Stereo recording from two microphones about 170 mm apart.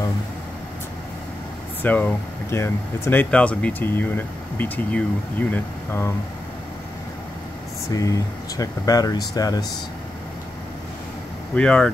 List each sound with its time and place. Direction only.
1.8 s speech: 10° left (ahead or behind)
7.9 s speech: 20° left (ahead or behind)
11.5 s speech: 5° left (ahead or behind)